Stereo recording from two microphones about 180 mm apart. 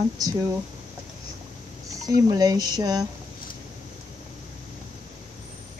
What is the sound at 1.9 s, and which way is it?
Speech, 20° right (ahead or behind).